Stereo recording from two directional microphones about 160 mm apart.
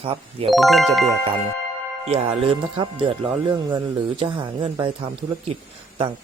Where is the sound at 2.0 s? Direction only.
40° right (ahead or behind).